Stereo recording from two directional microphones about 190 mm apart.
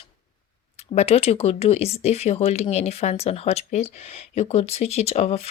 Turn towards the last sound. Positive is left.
turn(degrees=35)  # may be behind; listen again after turning